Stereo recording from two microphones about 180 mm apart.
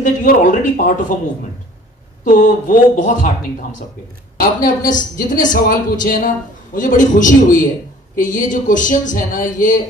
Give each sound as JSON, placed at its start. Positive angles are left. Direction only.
{"t": 0.0, "sound": "a woman's voice", "side_deg": 45}
{"t": 2.2, "sound": "a woman's voice", "side_deg": 45}
{"t": 4.4, "sound": "a woman's voice", "side_deg": 50}